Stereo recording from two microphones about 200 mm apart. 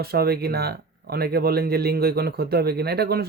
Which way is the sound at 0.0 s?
50° right (ahead or behind).